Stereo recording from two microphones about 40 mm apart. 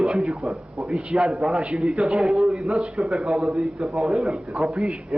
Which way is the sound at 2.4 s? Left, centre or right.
Right.